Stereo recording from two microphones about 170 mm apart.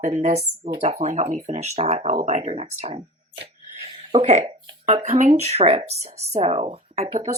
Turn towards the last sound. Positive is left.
turn(degrees=-40)  # may be behind; listen again after turning